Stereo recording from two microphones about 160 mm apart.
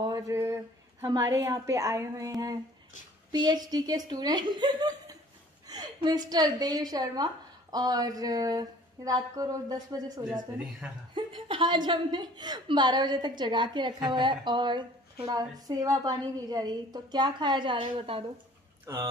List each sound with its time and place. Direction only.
0.0 s a sound: 20° right (ahead or behind)
1.0 s speech: 25° right (ahead or behind)
10.8 s speech: 5° right (ahead or behind)
11.1 s speech: 30° right (ahead or behind)
18.9 s speech: 20° right (ahead or behind)